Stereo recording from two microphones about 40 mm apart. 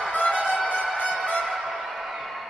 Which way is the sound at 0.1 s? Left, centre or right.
Left.